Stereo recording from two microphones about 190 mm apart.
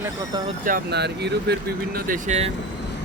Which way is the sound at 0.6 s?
55° right (ahead or behind).